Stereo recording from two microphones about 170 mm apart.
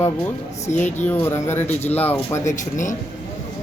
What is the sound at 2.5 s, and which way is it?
Speech, 45° left (ahead or behind).